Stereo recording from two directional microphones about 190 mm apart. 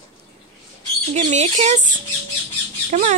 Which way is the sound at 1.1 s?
40° right (ahead or behind).